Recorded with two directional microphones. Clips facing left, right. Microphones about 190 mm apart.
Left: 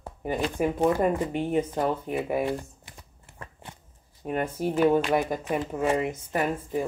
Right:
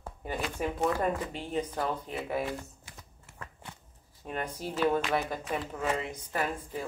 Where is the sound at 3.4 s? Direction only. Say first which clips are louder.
Left 2 dB; 25° left (ahead or behind).